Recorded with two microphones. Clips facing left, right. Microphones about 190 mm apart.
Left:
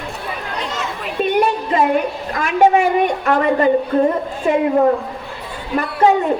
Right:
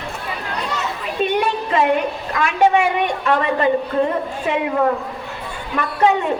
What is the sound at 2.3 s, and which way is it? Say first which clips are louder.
A woman's voice: left 2 dB; 40° left (ahead or behind).